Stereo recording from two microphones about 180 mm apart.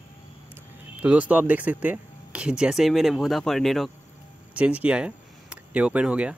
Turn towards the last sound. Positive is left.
turn(degrees=-5)  # may be behind; listen again after turning